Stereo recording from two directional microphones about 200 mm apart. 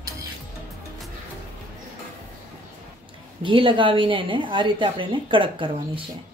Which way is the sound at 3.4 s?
25° right (ahead or behind).